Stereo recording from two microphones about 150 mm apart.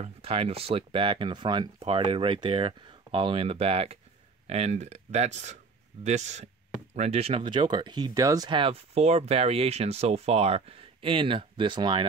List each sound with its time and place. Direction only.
0.0 s speech: 40° right (ahead or behind)